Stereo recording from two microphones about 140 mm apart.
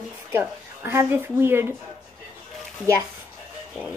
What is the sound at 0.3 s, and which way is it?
Speech, 15° right (ahead or behind).